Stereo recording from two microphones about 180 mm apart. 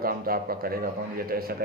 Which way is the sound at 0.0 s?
55° right (ahead or behind).